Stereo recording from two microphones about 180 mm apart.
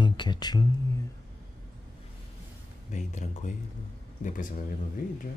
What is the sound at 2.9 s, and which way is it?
Speech, 45° left (ahead or behind).